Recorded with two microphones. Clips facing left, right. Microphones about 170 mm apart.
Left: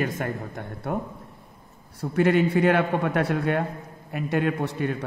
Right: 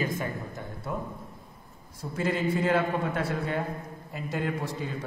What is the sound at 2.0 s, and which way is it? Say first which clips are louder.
A man's voice: left 8 dB; 65° left (ahead or behind).